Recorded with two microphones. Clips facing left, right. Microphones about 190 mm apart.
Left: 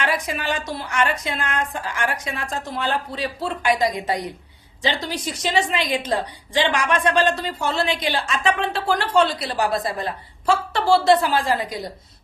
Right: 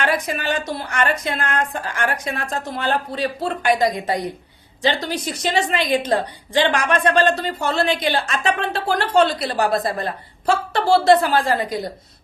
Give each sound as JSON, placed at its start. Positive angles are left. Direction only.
{"t": 0.0, "sound": "a woman's voice", "side_deg": -55}